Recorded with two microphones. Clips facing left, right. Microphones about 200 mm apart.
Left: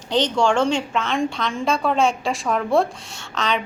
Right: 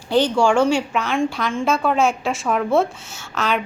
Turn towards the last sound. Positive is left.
turn(degrees=-5)  # may be behind; listen again after turning